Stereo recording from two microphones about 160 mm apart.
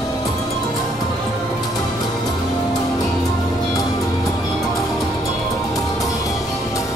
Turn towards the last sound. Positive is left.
turn(degrees=20)  # may be behind; listen again after turning